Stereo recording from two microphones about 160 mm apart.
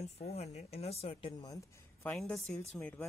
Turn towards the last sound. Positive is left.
turn(degrees=10)  # may be behind; listen again after turning